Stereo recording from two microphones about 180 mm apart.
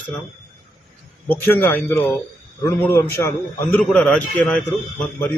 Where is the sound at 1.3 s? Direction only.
10° left (ahead or behind).